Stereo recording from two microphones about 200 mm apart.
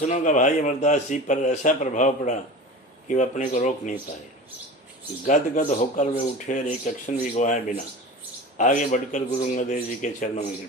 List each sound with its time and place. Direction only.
0.0 s a man's voice: 35° left (ahead or behind)
5.2 s a man's voice: 40° left (ahead or behind)